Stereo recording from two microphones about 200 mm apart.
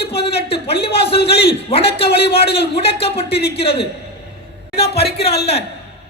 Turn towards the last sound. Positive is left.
turn(degrees=30)  # may be behind; listen again after turning